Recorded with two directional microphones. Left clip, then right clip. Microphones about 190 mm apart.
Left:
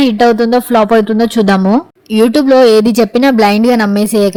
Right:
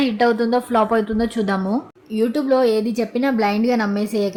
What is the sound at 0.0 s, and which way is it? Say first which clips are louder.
A woman's voice: left 9 dB; 40° left (ahead or behind).